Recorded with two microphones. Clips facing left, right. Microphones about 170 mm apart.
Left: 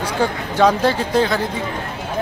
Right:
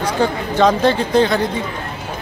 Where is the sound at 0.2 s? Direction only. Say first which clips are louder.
Right 1 dB; 10° left (ahead or behind).